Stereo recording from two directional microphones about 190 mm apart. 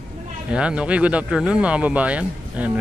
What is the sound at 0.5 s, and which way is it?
Speech, 5° right (ahead or behind).